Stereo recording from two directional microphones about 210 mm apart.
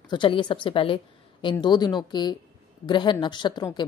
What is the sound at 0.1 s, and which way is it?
A woman's voice, 20° left (ahead or behind).